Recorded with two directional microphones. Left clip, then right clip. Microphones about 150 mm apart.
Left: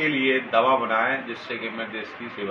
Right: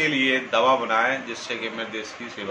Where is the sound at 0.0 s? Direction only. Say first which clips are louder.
Right 1 dB; 15° right (ahead or behind).